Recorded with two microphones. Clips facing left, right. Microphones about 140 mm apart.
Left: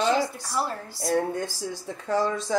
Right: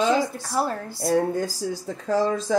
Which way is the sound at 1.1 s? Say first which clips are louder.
Right 3 dB; 35° right (ahead or behind).